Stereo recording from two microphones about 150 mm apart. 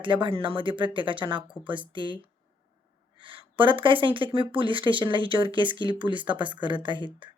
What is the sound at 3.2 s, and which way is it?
Speech, 35° right (ahead or behind).